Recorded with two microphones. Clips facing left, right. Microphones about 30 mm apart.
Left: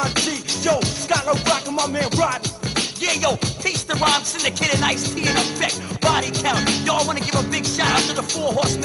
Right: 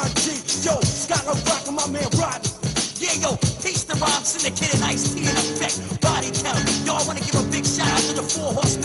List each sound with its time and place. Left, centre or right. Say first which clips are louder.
0.0 s music: left 3 dB; left